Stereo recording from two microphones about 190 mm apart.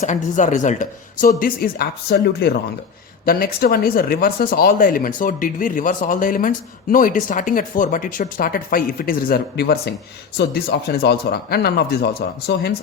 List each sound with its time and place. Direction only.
0.0 s speech: 40° left (ahead or behind); by 12.7 s 60° left (ahead or behind)